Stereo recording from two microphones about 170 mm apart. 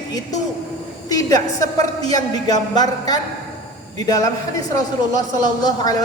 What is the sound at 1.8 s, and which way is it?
A woman's voice, 20° left (ahead or behind).